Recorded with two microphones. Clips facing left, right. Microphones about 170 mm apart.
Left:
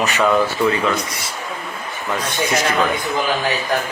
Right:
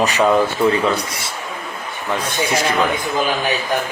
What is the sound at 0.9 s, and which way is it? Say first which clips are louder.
Speech: even; 30° right (ahead or behind).